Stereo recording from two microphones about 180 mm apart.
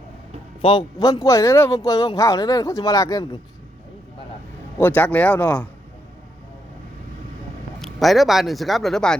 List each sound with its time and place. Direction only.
0.6 s speech: 25° left (ahead or behind)
4.8 s speech: 10° left (ahead or behind)
7.8 s speech: centre (ahead or behind)